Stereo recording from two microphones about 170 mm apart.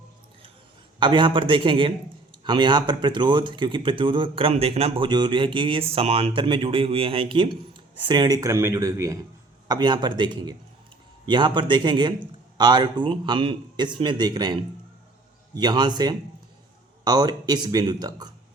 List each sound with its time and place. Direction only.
0.9 s speech: 30° right (ahead or behind)